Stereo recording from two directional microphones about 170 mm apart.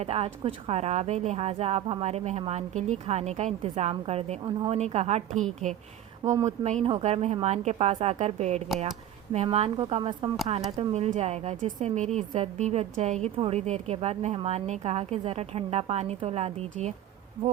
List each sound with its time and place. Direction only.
0.0 s a woman's voice: 35° right (ahead or behind)